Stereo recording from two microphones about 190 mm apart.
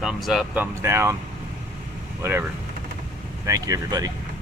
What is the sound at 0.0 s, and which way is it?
Speech, centre (ahead or behind).